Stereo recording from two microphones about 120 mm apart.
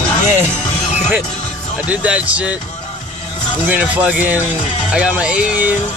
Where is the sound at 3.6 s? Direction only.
10° right (ahead or behind).